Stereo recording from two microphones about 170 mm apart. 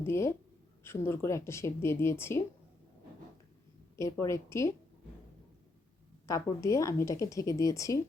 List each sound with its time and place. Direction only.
0.0 s speech: 15° left (ahead or behind)
3.9 s speech: 20° left (ahead or behind)
6.2 s speech: 20° left (ahead or behind)